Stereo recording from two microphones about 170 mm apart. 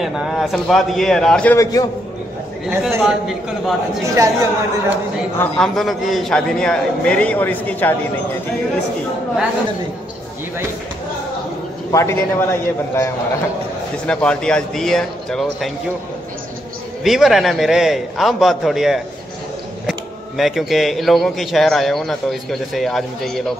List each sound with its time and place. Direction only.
0.0 s speech: centre (ahead or behind)
1.6 s a man's voice: 20° left (ahead or behind)
2.7 s speech: 10° right (ahead or behind)
4.0 s a woman's voice: 20° right (ahead or behind)
5.4 s speech: 5° left (ahead or behind)
11.9 s a man's voice: 15° left (ahead or behind)
17.0 s speech: centre (ahead or behind)